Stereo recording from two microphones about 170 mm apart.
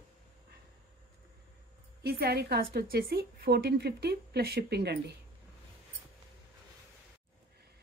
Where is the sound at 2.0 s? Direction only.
70° right (ahead or behind).